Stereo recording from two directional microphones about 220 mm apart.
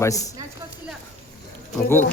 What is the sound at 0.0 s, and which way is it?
Speech, 15° left (ahead or behind).